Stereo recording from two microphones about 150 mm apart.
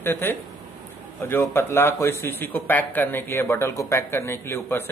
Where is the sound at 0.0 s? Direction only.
15° left (ahead or behind).